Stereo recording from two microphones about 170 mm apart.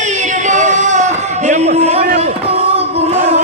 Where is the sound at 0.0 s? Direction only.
45° right (ahead or behind).